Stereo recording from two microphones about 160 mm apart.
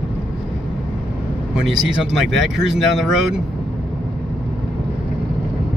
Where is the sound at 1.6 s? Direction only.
5° right (ahead or behind).